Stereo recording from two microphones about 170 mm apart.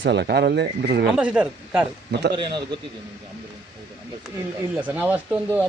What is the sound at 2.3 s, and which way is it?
Speech, 25° right (ahead or behind).